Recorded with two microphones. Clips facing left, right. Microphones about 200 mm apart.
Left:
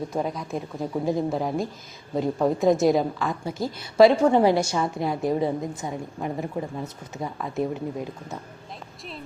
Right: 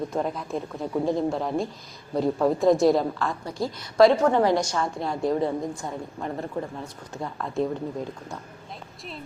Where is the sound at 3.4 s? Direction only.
25° left (ahead or behind).